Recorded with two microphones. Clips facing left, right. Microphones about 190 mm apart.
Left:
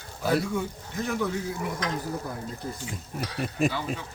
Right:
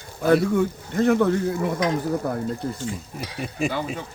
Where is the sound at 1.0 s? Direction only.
60° right (ahead or behind).